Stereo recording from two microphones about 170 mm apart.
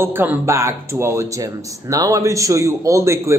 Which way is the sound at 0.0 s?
10° right (ahead or behind).